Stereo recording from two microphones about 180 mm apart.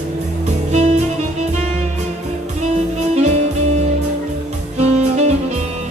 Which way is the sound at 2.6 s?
40° right (ahead or behind).